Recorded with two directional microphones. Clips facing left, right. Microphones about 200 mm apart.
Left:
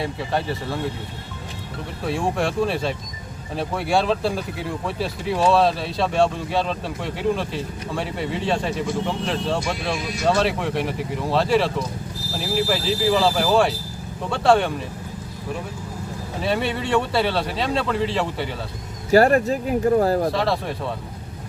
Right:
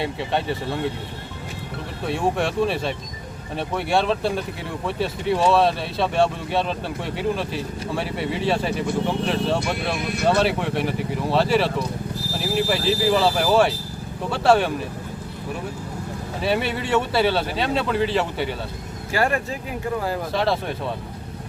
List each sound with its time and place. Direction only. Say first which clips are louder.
2.0 s speech: even; centre (ahead or behind)
10.0 s speech: right 2 dB; 60° right (ahead or behind)
10.2 s speech: even; centre (ahead or behind)
16.4 s speech: even; centre (ahead or behind)
19.1 s speech: left 8 dB; 40° left (ahead or behind)
20.3 s speech: even; centre (ahead or behind)